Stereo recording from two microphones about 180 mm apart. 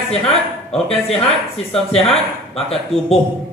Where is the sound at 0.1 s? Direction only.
35° left (ahead or behind).